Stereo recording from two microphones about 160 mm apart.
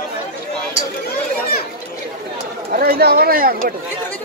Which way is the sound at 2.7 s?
65° right (ahead or behind).